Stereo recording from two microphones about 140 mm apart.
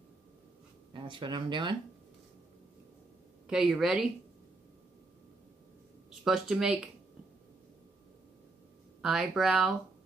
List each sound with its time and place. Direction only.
0.9 s speech: 35° right (ahead or behind)
3.4 s speech: 5° right (ahead or behind)
6.2 s speech: centre (ahead or behind)
9.0 s speech: 5° right (ahead or behind)